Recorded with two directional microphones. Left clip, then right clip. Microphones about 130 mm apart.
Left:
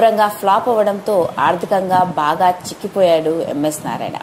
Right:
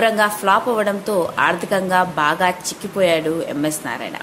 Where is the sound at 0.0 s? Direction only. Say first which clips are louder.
Left 3 dB; 15° left (ahead or behind).